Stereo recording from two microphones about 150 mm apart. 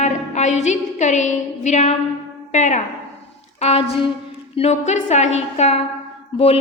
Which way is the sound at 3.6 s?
40° left (ahead or behind).